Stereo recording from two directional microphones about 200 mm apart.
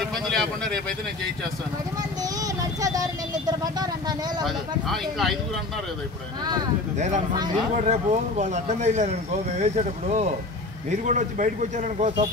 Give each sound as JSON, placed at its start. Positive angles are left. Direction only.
{"t": 0.1, "sound": "a sound", "side_deg": 5}
{"t": 2.0, "sound": "vehicle", "side_deg": -20}
{"t": 4.5, "sound": "speech", "side_deg": 0}
{"t": 7.7, "sound": "speech", "side_deg": -35}